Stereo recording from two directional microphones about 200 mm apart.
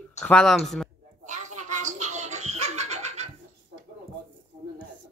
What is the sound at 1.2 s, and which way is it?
Music, 35° right (ahead or behind).